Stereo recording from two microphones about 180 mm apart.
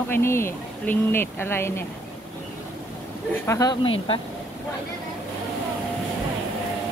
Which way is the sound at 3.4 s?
20° left (ahead or behind).